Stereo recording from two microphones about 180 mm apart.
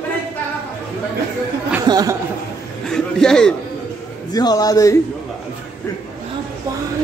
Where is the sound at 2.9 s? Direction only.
5° left (ahead or behind).